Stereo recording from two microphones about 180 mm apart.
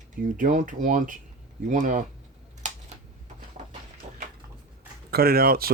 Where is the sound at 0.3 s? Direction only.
45° right (ahead or behind).